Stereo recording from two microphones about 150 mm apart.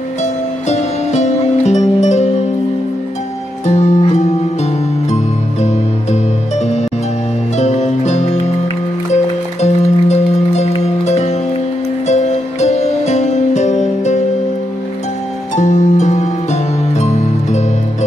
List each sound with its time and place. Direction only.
0.2 s music: 50° left (ahead or behind)
3.6 s music: 45° left (ahead or behind)
9.6 s music: 45° left (ahead or behind)
15.5 s music: 50° left (ahead or behind)